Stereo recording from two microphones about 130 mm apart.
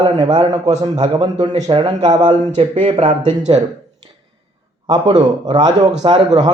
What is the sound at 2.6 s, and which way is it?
Speech, 40° right (ahead or behind).